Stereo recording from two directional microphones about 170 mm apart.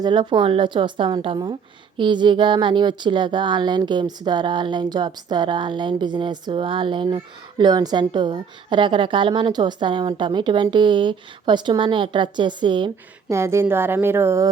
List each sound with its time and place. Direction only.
0.0 s a woman's voice: 25° right (ahead or behind)
13.3 s speech: 15° right (ahead or behind)